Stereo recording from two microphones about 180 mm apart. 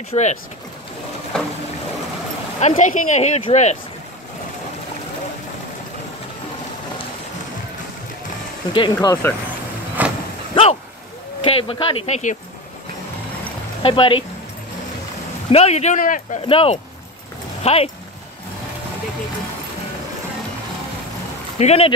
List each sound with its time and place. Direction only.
0.1 s speech: 40° left (ahead or behind)
1.3 s a sound: 5° left (ahead or behind)
2.6 s speech: 40° left (ahead or behind)
8.7 s speech: 25° left (ahead or behind)
10.0 s livestock: 10° right (ahead or behind)
10.5 s a sound: 30° left (ahead or behind)
11.4 s speech: 30° left (ahead or behind)
13.8 s speech: 30° left (ahead or behind)
15.5 s speech: 35° left (ahead or behind)
16.4 s speech: 30° left (ahead or behind)
21.5 s speech: 35° left (ahead or behind)